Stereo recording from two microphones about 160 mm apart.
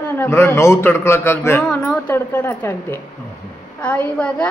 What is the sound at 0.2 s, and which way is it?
A man's voice, 15° left (ahead or behind).